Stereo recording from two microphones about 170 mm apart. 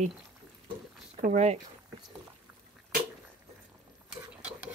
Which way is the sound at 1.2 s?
45° right (ahead or behind).